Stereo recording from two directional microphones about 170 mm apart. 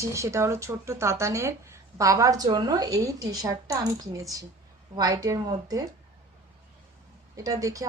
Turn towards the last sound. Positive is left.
turn(degrees=-20)  # may be behind; listen again after turning